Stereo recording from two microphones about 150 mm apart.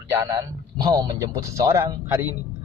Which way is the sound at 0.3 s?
30° right (ahead or behind).